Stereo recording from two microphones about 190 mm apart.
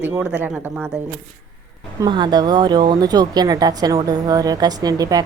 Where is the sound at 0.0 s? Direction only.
10° right (ahead or behind).